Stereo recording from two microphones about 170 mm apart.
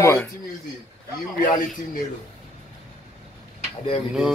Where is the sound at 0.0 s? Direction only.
15° left (ahead or behind).